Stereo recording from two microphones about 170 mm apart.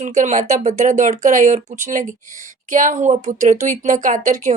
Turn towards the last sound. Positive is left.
turn(degrees=-45)  # may be behind; listen again after turning